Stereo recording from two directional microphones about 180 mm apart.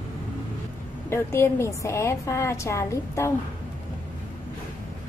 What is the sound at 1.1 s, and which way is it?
A woman's voice, 15° left (ahead or behind).